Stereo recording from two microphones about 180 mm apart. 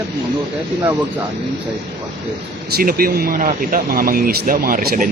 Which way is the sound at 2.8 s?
55° right (ahead or behind).